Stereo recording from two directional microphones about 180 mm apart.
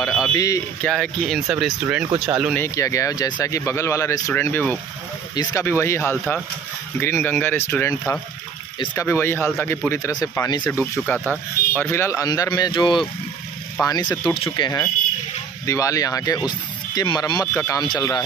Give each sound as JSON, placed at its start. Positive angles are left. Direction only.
{"t": 0.2, "sound": "a sound", "side_deg": 20}
{"t": 0.8, "sound": "speech", "side_deg": 5}
{"t": 2.5, "sound": "speech", "side_deg": 15}